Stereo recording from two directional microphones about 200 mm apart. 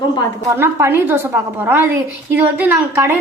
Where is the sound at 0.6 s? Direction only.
10° right (ahead or behind).